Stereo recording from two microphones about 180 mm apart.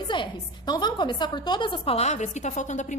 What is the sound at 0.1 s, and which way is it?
A woman's voice, 25° left (ahead or behind).